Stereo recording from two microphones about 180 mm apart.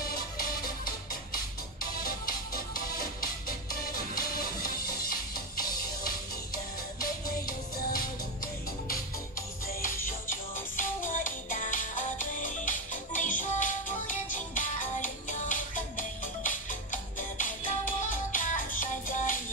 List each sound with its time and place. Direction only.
0.0 s music: 55° left (ahead or behind)
10.0 s music: 50° left (ahead or behind)